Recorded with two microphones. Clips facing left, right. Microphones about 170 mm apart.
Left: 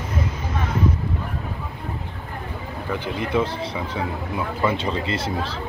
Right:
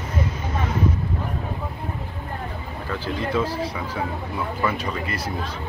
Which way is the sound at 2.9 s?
15° left (ahead or behind).